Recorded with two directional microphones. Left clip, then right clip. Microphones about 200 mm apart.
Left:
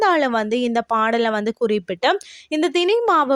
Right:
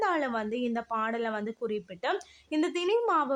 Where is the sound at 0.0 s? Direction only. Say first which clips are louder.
Left 11 dB; 35° left (ahead or behind).